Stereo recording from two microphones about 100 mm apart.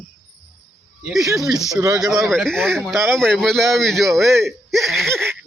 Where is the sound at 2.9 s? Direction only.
30° right (ahead or behind).